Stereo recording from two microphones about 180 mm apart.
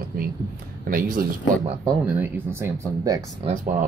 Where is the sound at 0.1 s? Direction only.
55° right (ahead or behind).